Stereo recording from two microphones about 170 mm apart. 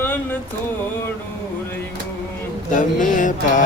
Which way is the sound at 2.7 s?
50° left (ahead or behind).